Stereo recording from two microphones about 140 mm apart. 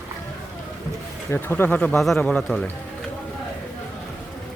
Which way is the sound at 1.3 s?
15° left (ahead or behind).